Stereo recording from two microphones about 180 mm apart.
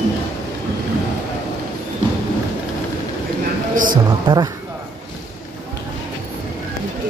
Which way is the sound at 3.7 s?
50° right (ahead or behind).